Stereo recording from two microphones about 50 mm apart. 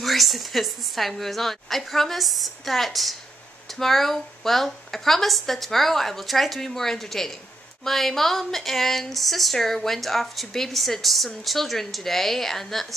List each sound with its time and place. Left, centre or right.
0.0 s speech: centre